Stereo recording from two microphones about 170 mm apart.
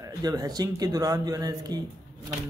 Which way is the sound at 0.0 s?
25° right (ahead or behind).